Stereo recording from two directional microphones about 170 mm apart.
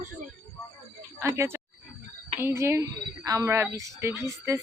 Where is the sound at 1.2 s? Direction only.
15° right (ahead or behind).